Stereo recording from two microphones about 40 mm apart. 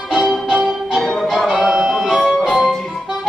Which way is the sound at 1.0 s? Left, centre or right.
Centre.